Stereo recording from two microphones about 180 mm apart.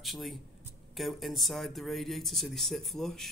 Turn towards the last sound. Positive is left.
turn(degrees=0)  # may be behind; listen again after turning